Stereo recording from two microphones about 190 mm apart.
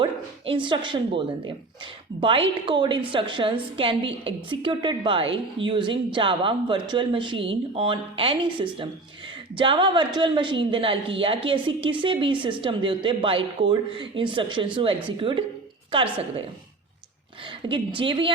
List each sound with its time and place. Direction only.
0.0 s a woman's voice: 25° right (ahead or behind)
17.7 s a woman's voice: 25° right (ahead or behind)